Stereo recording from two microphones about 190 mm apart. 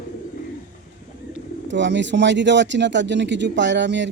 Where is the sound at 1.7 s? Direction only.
70° right (ahead or behind).